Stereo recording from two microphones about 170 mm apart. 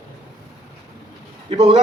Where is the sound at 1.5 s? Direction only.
35° right (ahead or behind).